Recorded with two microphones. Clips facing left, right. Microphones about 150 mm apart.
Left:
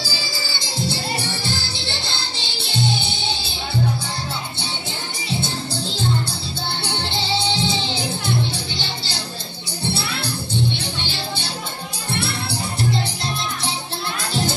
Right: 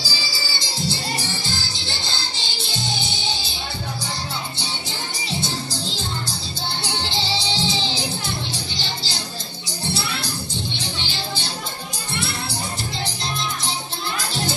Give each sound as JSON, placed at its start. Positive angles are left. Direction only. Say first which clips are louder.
{"t": 0.0, "sound": "music", "louder": "left 2 dB", "side_deg": 55}
{"t": 6.8, "sound": "music", "louder": "right 1 dB", "side_deg": 60}